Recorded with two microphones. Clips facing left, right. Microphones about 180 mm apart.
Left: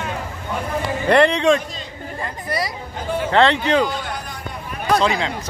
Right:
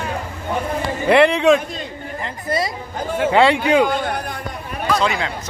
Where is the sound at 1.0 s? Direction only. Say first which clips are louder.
Right 2 dB; 5° right (ahead or behind).